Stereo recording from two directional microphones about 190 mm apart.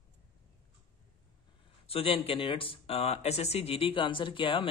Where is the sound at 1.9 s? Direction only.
30° left (ahead or behind).